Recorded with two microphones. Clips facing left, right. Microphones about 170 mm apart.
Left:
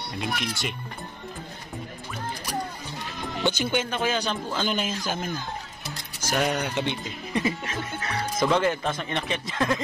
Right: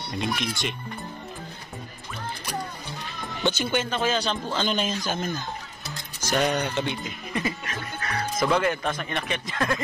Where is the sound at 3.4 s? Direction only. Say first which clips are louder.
Even; 15° left (ahead or behind).